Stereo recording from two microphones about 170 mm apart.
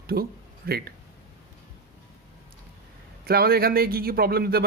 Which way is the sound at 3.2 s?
65° right (ahead or behind).